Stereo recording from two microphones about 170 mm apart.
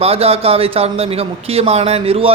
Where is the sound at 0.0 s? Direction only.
35° right (ahead or behind).